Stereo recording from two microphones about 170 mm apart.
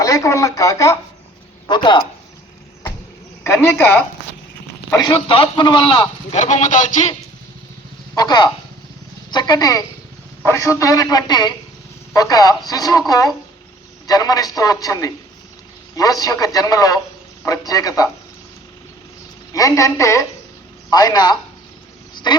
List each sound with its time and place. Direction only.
0.0 s speech: 20° left (ahead or behind)
3.4 s speech: 15° left (ahead or behind)
4.9 s speech: 30° left (ahead or behind)
6.3 s a man's voice: 45° left (ahead or behind)
8.1 s speech: 25° left (ahead or behind)
19.5 s speech: 20° left (ahead or behind)